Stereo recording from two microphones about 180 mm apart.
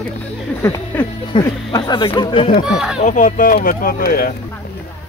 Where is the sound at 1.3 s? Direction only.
25° left (ahead or behind).